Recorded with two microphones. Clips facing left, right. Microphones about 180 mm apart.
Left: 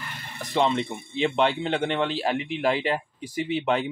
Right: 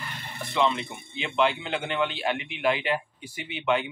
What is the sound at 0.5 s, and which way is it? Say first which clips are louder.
Speech: left 2 dB; 35° left (ahead or behind).